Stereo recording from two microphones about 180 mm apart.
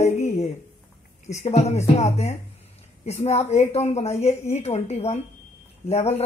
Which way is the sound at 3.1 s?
35° left (ahead or behind).